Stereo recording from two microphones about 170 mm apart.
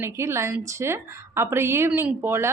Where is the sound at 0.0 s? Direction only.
15° right (ahead or behind).